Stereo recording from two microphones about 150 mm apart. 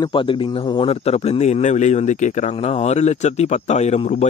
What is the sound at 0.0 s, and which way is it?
Speech, 35° left (ahead or behind).